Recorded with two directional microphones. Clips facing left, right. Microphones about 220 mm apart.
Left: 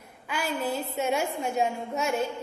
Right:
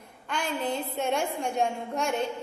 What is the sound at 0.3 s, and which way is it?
A woman's voice, 5° left (ahead or behind).